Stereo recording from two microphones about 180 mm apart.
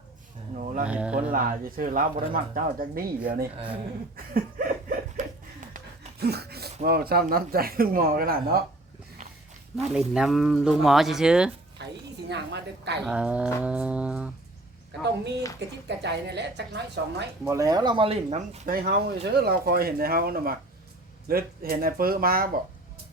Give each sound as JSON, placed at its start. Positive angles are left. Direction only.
{"t": 0.5, "sound": "a sound", "side_deg": -45}
{"t": 0.9, "sound": "a sound", "side_deg": -5}
{"t": 1.3, "sound": "speech", "side_deg": -50}
{"t": 4.5, "sound": "chuckle", "side_deg": -50}
{"t": 6.1, "sound": "speech", "side_deg": -60}
{"t": 9.8, "sound": "speech", "side_deg": -5}
{"t": 11.8, "sound": "a sound", "side_deg": -70}
{"t": 12.3, "sound": "a woman's voice", "side_deg": -70}
{"t": 13.0, "sound": "a sound", "side_deg": -5}
{"t": 15.0, "sound": "a woman's voice", "side_deg": -70}
{"t": 17.4, "sound": "speech", "side_deg": -15}
{"t": 18.7, "sound": "speech", "side_deg": -60}